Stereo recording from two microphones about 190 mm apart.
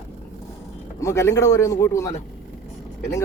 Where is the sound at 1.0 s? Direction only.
15° left (ahead or behind).